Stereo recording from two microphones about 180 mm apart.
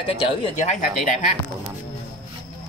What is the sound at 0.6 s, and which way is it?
Speech, 45° left (ahead or behind).